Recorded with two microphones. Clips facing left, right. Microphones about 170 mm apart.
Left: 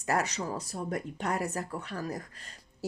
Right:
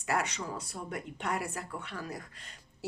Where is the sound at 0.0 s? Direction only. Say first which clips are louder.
Left 3 dB; 40° left (ahead or behind).